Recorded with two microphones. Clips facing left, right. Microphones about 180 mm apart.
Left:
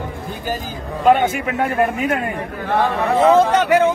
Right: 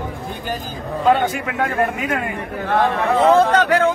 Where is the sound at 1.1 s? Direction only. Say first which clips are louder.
Left 3 dB; 20° left (ahead or behind).